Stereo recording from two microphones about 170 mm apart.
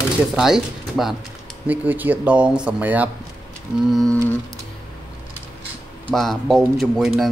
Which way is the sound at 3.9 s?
Centre (ahead or behind).